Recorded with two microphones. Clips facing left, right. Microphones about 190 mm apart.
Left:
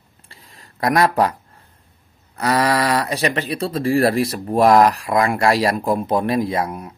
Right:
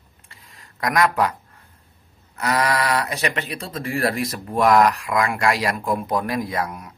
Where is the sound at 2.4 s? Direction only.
35° left (ahead or behind).